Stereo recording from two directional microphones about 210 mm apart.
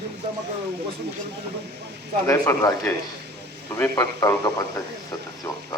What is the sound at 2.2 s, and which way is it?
A man's voice, 15° left (ahead or behind).